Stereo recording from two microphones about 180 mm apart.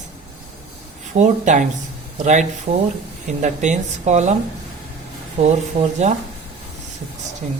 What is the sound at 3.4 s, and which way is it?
Speech, 40° right (ahead or behind).